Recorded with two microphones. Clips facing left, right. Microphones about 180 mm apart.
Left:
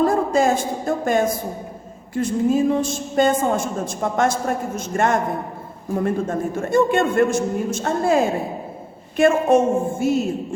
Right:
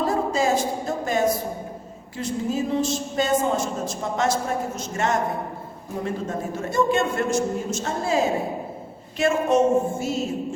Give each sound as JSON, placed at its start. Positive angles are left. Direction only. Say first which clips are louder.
{"t": 0.0, "sound": "music", "louder": "left 5 dB", "side_deg": 50}
{"t": 2.1, "sound": "a woman's voice", "louder": "left 7 dB", "side_deg": 50}